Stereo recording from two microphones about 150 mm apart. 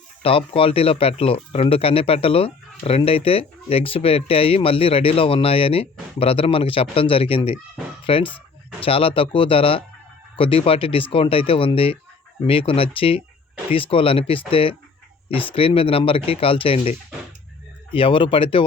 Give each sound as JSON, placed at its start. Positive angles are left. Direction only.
{"t": 0.2, "sound": "speech", "side_deg": 40}
{"t": 17.9, "sound": "speech", "side_deg": 35}